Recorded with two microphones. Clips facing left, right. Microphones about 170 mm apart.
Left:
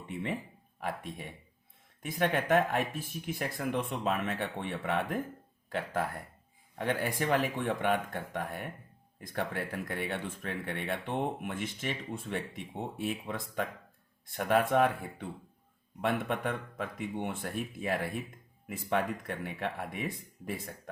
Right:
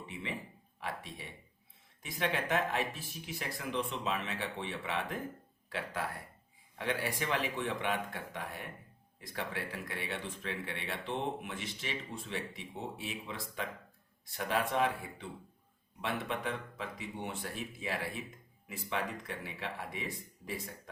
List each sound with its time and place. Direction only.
0.8 s speech: 50° left (ahead or behind)